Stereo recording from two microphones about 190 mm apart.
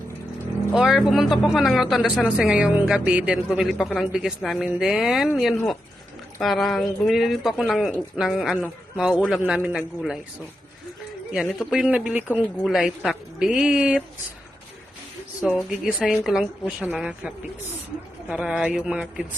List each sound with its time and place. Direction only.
0.7 s speech: 5° right (ahead or behind)
11.3 s speech: centre (ahead or behind)
15.4 s speech: 5° right (ahead or behind)